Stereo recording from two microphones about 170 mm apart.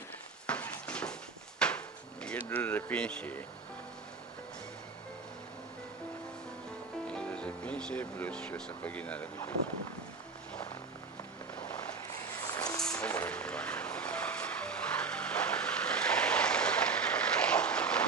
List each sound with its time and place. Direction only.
0.4 s a sound: 5° left (ahead or behind)
1.5 s drawer open or close: 5° left (ahead or behind)
2.5 s speech: 10° left (ahead or behind)
7.1 s speech: 5° left (ahead or behind)
12.5 s vehicle: 20° left (ahead or behind)
13.0 s vehicle: 10° left (ahead or behind)